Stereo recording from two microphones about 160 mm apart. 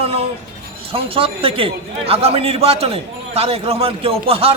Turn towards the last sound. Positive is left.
turn(degrees=-35)  # may be behind; listen again after turning